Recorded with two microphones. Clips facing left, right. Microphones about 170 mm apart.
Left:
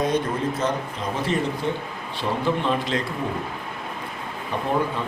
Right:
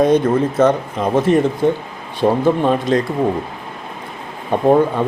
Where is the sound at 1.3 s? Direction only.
55° right (ahead or behind).